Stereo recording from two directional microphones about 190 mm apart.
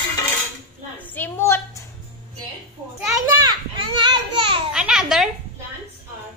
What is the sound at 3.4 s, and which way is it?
A child's voice, 25° right (ahead or behind).